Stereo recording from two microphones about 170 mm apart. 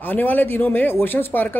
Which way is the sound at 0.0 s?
10° left (ahead or behind).